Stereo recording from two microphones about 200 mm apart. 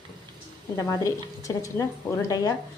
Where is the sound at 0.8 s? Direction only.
15° left (ahead or behind).